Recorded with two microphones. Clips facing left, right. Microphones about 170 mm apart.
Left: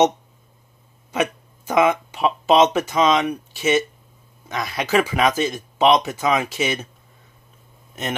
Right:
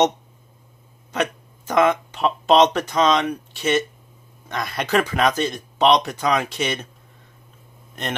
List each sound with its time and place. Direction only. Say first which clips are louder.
1.1 s speech: left 1 dB; 5° left (ahead or behind)
8.0 s speech: left 1 dB; 5° left (ahead or behind)